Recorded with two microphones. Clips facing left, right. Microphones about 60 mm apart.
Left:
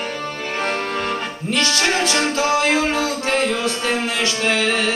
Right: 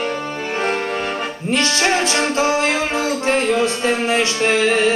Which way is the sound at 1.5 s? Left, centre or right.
Right.